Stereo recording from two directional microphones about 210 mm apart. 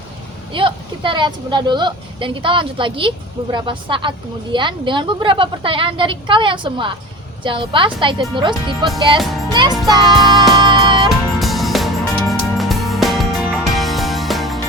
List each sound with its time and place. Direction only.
0.5 s speech: 25° right (ahead or behind)
9.5 s music: 20° right (ahead or behind)
9.8 s speech: 20° right (ahead or behind)
10.5 s music: 20° right (ahead or behind)
11.1 s music: centre (ahead or behind)